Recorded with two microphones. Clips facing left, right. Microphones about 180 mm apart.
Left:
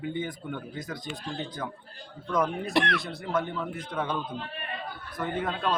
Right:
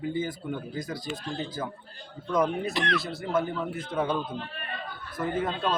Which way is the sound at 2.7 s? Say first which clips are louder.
Left 3 dB; 60° left (ahead or behind).